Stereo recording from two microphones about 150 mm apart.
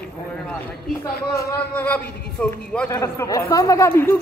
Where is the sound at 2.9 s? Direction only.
20° left (ahead or behind).